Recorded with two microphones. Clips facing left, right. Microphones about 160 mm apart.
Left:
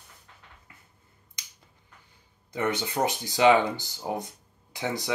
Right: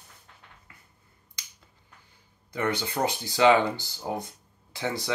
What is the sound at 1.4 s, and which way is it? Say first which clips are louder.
Finger snapping: right 1 dB; 20° left (ahead or behind).